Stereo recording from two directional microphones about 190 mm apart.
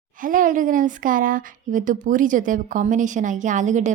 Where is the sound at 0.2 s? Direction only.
45° right (ahead or behind).